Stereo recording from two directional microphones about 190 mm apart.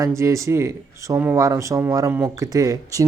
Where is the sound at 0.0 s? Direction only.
15° right (ahead or behind).